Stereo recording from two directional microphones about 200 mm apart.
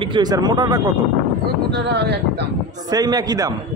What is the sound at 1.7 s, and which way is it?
Speech, 55° right (ahead or behind).